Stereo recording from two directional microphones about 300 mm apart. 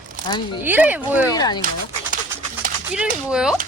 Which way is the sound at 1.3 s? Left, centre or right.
Centre.